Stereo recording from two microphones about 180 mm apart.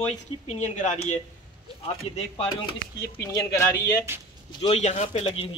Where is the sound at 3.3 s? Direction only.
15° left (ahead or behind).